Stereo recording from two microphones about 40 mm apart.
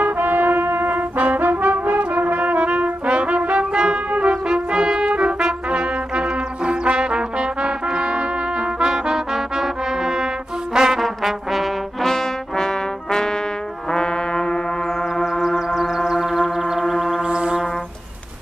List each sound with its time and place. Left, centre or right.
0.0 s brass instrument: right; by 11.0 s centre
11.0 s trombone: centre
12.1 s trumpet: centre
13.9 s brass instrument: centre
15.4 s a sound: centre
16.1 s music: centre
17.2 s music: right